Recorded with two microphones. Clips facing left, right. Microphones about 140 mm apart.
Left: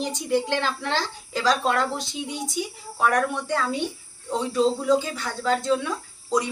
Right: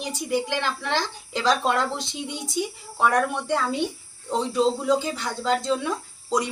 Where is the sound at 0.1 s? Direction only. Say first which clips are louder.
Right 2 dB; 10° right (ahead or behind).